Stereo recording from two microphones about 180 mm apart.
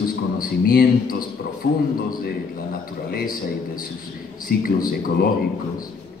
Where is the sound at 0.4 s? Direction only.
55° left (ahead or behind).